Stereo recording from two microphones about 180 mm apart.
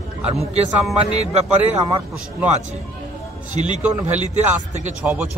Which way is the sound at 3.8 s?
10° right (ahead or behind).